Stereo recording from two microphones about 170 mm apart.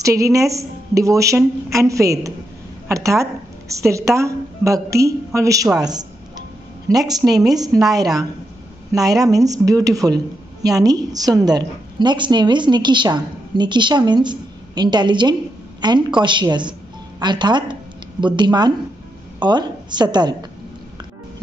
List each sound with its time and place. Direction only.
0.0 s a woman's voice: 20° right (ahead or behind)